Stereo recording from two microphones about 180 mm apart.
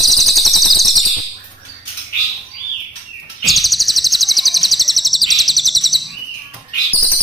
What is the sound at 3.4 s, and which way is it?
Bird, centre (ahead or behind).